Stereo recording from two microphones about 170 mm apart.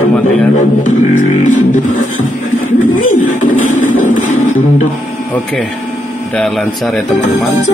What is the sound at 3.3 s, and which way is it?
Music, 50° left (ahead or behind).